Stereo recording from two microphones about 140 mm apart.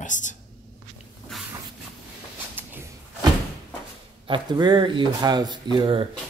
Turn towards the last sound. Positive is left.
turn(degrees=-35)  # may be behind; listen again after turning